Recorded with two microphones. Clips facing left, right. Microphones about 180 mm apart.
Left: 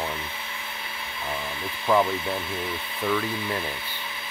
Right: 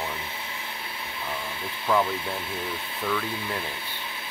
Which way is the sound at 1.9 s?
10° left (ahead or behind).